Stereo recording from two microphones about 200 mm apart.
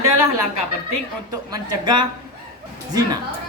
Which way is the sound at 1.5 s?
20° right (ahead or behind).